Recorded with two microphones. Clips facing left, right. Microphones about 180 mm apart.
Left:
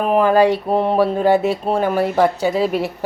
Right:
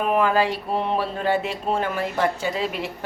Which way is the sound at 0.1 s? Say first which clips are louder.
Left 8 dB; 40° left (ahead or behind).